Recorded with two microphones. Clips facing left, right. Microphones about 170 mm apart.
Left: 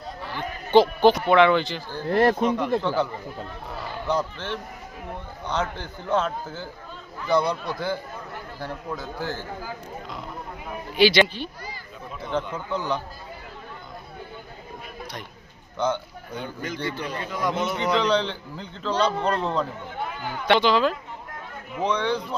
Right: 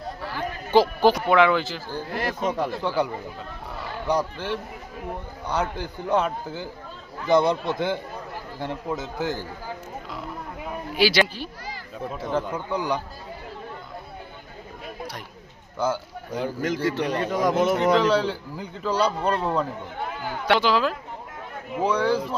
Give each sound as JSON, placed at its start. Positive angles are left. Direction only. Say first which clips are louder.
{"t": 0.3, "sound": "speech", "louder": "left 2 dB", "side_deg": -5}
{"t": 2.0, "sound": "speech", "louder": "left 8 dB", "side_deg": 55}
{"t": 2.8, "sound": "a man's voice", "louder": "even", "side_deg": -10}
{"t": 10.9, "sound": "a man's voice", "louder": "left 3 dB", "side_deg": -5}
{"t": 15.8, "sound": "a man's voice", "louder": "even", "side_deg": -5}
{"t": 16.3, "sound": "a man's voice", "louder": "right 6 dB", "side_deg": -80}
{"t": 17.2, "sound": "speech", "louder": "right 3 dB", "side_deg": -45}
{"t": 17.9, "sound": "a man's voice", "louder": "right 2 dB", "side_deg": -5}